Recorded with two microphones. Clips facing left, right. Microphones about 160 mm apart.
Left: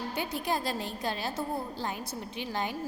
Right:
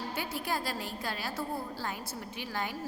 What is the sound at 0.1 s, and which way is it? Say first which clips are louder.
A woman's voice: left 4 dB; 20° left (ahead or behind).